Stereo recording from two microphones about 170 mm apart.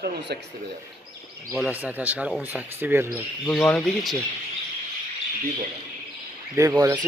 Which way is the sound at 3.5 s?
5° left (ahead or behind).